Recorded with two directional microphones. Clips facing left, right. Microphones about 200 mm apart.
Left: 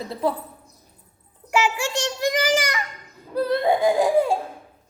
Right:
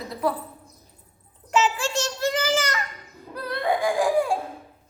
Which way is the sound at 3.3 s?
25° left (ahead or behind).